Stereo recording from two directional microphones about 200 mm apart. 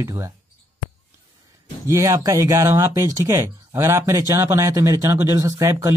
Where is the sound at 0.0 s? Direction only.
15° right (ahead or behind).